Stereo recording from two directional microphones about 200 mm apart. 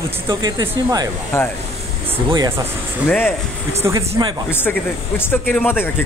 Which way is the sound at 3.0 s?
5° left (ahead or behind).